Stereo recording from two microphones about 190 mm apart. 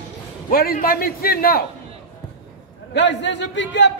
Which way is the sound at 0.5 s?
50° left (ahead or behind).